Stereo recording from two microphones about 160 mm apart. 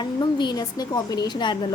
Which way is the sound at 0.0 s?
30° left (ahead or behind).